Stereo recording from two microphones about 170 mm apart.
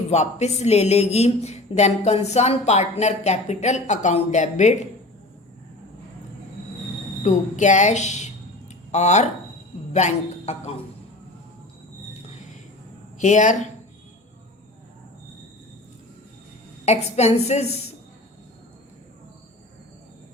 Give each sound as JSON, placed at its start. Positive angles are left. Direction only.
{"t": 0.1, "sound": "speech", "side_deg": 40}
{"t": 7.2, "sound": "a woman's voice", "side_deg": 45}
{"t": 13.1, "sound": "speech", "side_deg": 45}
{"t": 16.8, "sound": "speech", "side_deg": 40}